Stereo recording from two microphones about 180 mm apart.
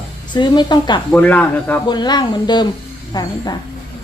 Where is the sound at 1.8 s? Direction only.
25° left (ahead or behind).